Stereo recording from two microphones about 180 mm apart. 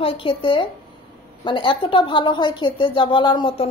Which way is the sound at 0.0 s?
30° left (ahead or behind).